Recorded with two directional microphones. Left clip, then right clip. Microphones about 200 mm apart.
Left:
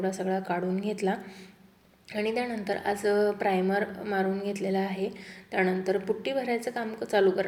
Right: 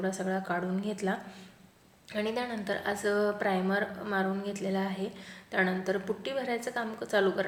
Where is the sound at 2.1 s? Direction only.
5° left (ahead or behind).